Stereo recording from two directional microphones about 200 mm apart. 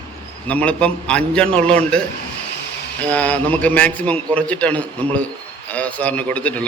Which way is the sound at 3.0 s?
5° left (ahead or behind).